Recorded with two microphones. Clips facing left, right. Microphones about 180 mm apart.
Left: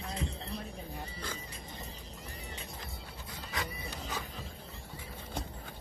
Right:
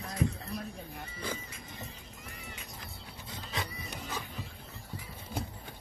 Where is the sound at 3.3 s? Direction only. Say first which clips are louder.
Right 1 dB; 25° right (ahead or behind).